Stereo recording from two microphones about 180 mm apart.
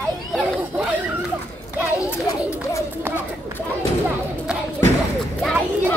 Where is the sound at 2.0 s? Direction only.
15° left (ahead or behind).